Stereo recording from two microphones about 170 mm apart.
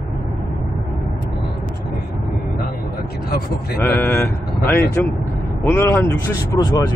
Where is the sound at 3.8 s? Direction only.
15° left (ahead or behind).